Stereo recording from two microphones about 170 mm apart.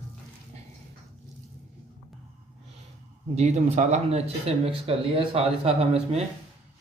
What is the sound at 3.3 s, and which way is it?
Speech, 40° right (ahead or behind).